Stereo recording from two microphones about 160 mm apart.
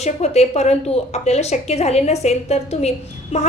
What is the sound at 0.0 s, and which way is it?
A woman's voice, 45° left (ahead or behind).